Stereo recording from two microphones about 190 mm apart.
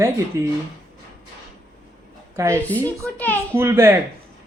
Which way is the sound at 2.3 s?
15° right (ahead or behind).